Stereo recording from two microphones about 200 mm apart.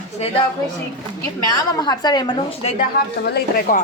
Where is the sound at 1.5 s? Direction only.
20° left (ahead or behind).